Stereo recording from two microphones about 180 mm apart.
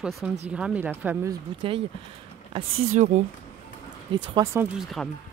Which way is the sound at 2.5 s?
40° right (ahead or behind).